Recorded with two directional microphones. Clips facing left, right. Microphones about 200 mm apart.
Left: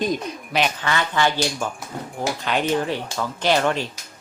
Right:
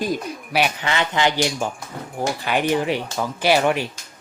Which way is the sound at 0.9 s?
20° right (ahead or behind).